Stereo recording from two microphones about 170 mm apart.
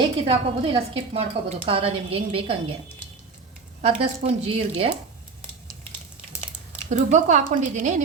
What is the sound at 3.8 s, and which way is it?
A woman's voice, 40° right (ahead or behind).